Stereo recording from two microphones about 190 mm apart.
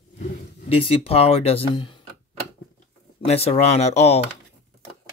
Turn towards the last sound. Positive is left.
turn(degrees=35)  # may be behind; listen again after turning